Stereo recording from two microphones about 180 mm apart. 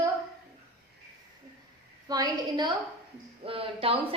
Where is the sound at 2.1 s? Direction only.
25° right (ahead or behind).